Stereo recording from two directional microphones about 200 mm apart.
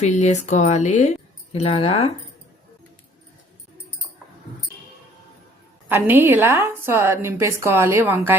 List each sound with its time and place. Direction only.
0.0 s speech: 35° left (ahead or behind)
5.9 s a woman's voice: 10° right (ahead or behind)